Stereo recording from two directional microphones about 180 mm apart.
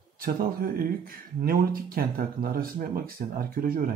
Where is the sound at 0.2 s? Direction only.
55° right (ahead or behind).